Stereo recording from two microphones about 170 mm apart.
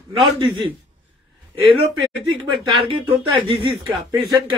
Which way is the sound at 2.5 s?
30° right (ahead or behind).